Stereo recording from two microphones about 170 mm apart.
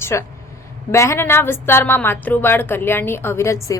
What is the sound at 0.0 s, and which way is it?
A woman's voice, 15° left (ahead or behind).